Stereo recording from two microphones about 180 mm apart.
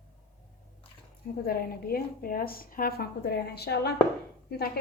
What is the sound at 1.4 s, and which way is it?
A woman's voice, 55° left (ahead or behind).